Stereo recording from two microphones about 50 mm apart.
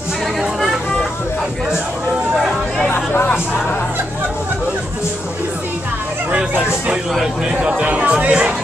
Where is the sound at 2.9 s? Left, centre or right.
Left.